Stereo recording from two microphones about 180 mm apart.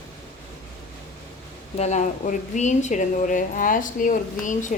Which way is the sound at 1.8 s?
40° left (ahead or behind).